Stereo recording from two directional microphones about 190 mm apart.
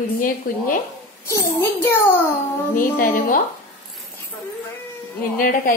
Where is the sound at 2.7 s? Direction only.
45° left (ahead or behind).